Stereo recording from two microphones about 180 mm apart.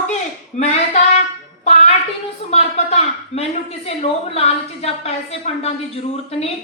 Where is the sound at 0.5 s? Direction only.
40° left (ahead or behind).